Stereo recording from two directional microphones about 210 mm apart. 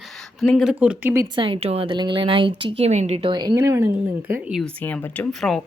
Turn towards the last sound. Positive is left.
turn(degrees=5)  # may be behind; listen again after turning